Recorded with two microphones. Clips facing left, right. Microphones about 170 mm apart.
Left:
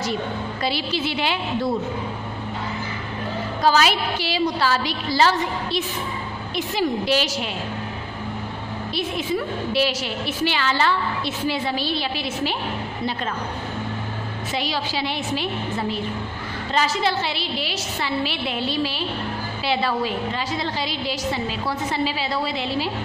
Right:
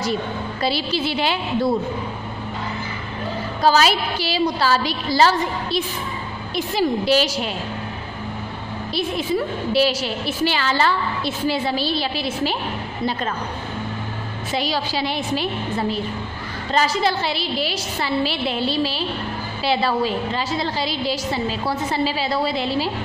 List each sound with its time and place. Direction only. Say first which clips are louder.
0.6 s a woman's voice: right 3 dB; 35° right (ahead or behind)
3.6 s a woman's voice: right 2 dB; 35° right (ahead or behind)
8.9 s a woman's voice: right 3 dB; 35° right (ahead or behind)
14.5 s a woman's voice: right 3 dB; 40° right (ahead or behind)
16.7 s a woman's voice: right 2 dB; 40° right (ahead or behind)